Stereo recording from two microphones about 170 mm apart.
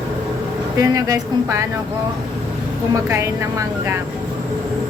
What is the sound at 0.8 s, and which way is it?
Speech, 20° right (ahead or behind).